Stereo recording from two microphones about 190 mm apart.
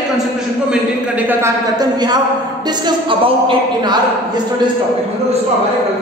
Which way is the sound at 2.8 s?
25° right (ahead or behind).